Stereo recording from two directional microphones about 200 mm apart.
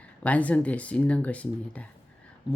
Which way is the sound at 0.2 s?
5° left (ahead or behind).